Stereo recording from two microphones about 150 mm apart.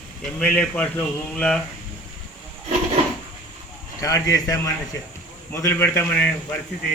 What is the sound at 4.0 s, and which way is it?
A man's voice, 20° left (ahead or behind).